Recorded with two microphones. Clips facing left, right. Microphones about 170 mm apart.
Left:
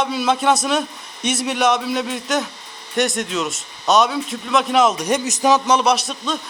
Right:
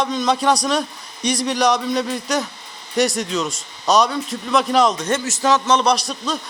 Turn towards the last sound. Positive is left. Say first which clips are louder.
# even
turn(degrees=0)  # may be behind; listen again after turning